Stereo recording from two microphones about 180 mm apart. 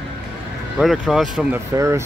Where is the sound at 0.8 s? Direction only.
Centre (ahead or behind).